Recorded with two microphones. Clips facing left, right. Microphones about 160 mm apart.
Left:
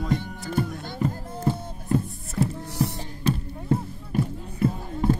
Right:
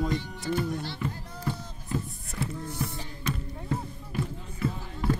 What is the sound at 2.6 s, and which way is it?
Music, 75° left (ahead or behind).